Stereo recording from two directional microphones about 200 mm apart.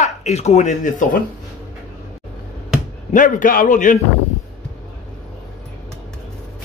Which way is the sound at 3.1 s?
40° left (ahead or behind).